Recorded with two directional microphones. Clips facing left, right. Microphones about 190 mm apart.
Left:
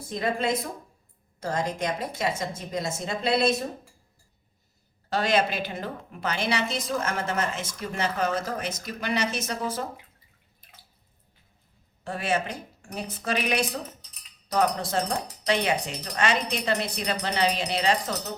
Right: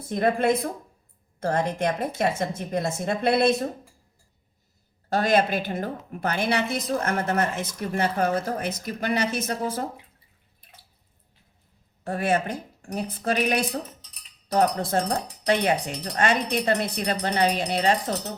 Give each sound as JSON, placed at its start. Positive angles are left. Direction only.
{"t": 0.1, "sound": "a woman's voice", "side_deg": -55}
{"t": 5.0, "sound": "a woman's voice", "side_deg": -50}
{"t": 12.0, "sound": "a woman's voice", "side_deg": -55}
{"t": 14.8, "sound": "a woman's voice", "side_deg": -55}